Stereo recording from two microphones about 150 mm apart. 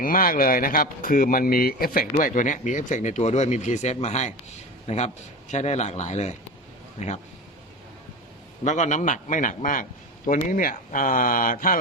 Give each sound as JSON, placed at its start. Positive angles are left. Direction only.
{"t": 0.0, "sound": "speech", "side_deg": 70}
{"t": 8.6, "sound": "speech", "side_deg": 55}